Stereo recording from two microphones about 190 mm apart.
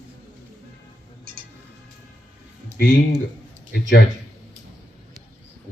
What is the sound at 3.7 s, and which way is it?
Speech, 60° left (ahead or behind).